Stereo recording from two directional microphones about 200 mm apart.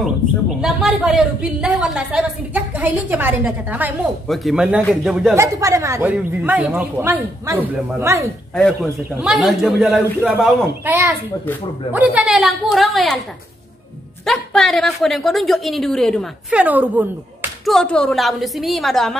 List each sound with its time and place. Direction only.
0.6 s a woman's voice: centre (ahead or behind)
5.3 s speech: 15° right (ahead or behind)
9.2 s a woman's voice: centre (ahead or behind)
14.2 s a woman's voice: centre (ahead or behind)
17.7 s a woman's voice: 5° left (ahead or behind)